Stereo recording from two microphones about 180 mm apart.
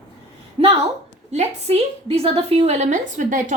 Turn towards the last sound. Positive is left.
turn(degrees=-45)  # may be behind; listen again after turning